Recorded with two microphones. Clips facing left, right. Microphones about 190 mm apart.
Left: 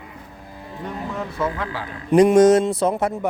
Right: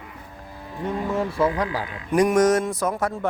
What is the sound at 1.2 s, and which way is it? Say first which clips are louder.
Speech: right 3 dB; 30° right (ahead or behind).